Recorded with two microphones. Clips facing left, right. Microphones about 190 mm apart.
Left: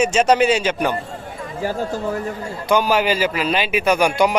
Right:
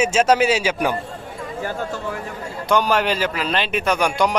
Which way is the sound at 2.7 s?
Centre (ahead or behind).